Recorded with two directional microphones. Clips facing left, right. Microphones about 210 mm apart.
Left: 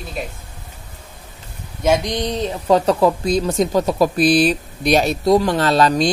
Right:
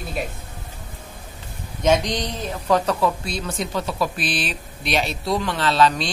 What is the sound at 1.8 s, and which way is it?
Speech, 10° left (ahead or behind).